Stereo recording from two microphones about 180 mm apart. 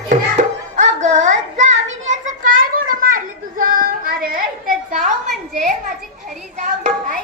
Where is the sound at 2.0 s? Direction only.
45° right (ahead or behind).